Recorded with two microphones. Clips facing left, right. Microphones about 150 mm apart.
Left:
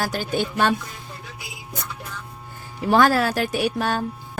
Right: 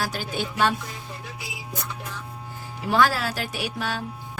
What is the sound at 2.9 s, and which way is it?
Speech, 50° left (ahead or behind).